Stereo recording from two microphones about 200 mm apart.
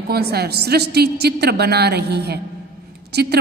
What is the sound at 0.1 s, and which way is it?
A woman's voice, 55° right (ahead or behind).